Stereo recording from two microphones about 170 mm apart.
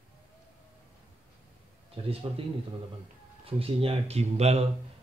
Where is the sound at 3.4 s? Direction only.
35° right (ahead or behind).